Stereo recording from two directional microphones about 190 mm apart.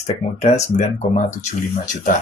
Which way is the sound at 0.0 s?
40° left (ahead or behind).